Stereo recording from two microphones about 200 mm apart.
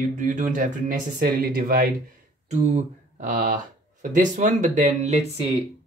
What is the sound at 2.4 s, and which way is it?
Speech, 35° right (ahead or behind).